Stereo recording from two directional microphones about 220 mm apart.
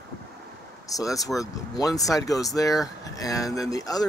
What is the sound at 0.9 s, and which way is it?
Speech, 15° left (ahead or behind).